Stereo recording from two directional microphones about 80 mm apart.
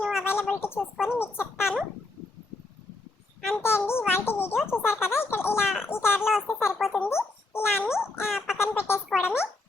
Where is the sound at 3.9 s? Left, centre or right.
Left.